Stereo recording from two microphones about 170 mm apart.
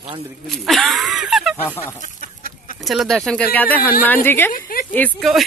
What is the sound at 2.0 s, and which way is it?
Chicken, 50° left (ahead or behind).